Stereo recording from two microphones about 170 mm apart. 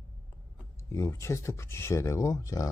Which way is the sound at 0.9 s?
15° left (ahead or behind).